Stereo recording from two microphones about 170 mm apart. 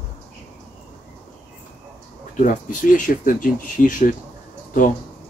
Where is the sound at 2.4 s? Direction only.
50° left (ahead or behind).